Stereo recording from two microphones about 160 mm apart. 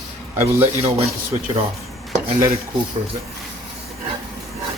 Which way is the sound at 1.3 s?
30° right (ahead or behind).